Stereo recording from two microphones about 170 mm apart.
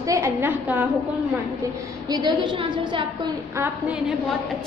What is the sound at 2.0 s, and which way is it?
A woman's voice, 25° right (ahead or behind).